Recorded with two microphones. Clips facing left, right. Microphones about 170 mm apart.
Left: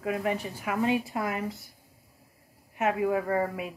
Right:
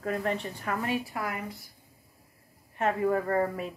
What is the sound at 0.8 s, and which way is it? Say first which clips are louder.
Speech: left 7 dB; 20° left (ahead or behind).